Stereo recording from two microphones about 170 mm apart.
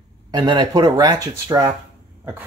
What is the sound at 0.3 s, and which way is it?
Speech, 30° right (ahead or behind).